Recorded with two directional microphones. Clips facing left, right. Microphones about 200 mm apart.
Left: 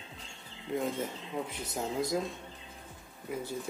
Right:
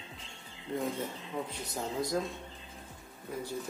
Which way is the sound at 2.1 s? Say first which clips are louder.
Even; centre (ahead or behind).